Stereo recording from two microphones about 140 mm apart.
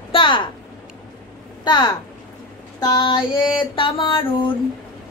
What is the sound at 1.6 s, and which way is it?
A woman's voice, 30° left (ahead or behind).